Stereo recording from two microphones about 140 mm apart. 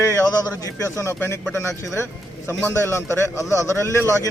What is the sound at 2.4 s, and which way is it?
A man's voice, 20° left (ahead or behind).